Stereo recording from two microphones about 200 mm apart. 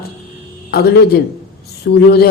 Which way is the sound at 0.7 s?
50° left (ahead or behind).